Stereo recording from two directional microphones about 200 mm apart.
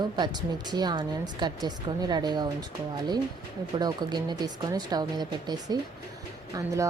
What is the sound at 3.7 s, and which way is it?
A woman's voice, 20° right (ahead or behind).